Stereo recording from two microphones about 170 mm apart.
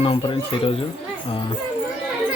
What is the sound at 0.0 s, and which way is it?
Speech, 30° left (ahead or behind).